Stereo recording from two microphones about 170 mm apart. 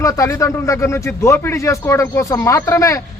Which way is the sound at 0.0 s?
20° left (ahead or behind).